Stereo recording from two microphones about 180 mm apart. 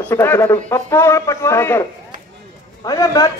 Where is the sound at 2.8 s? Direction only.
20° left (ahead or behind).